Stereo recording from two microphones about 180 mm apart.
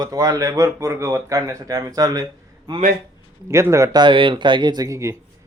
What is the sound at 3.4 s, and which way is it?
A man's voice, 15° right (ahead or behind).